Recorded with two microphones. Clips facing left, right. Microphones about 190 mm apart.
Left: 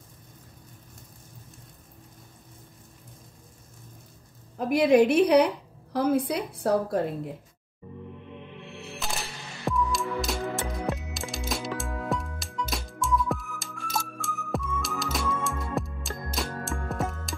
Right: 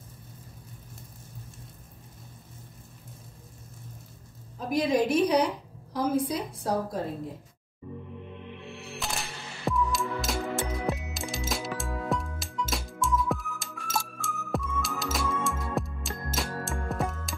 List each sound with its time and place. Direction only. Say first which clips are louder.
4.6 s a woman's voice: left 6 dB; 65° left (ahead or behind)
9.0 s music: even; centre (ahead or behind)